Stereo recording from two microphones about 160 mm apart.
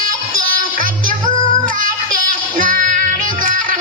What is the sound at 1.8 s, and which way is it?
Music, 60° right (ahead or behind).